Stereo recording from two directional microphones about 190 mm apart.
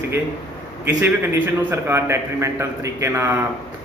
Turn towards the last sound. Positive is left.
turn(degrees=-15)  # may be behind; listen again after turning